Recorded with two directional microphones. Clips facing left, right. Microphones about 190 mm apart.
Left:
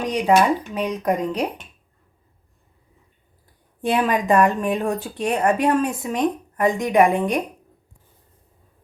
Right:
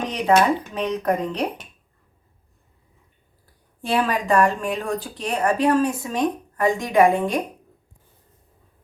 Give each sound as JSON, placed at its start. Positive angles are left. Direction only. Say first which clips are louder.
{"t": 0.1, "sound": "speech", "louder": "left 1 dB", "side_deg": 10}
{"t": 3.8, "sound": "a woman's voice", "louder": "left 2 dB", "side_deg": 20}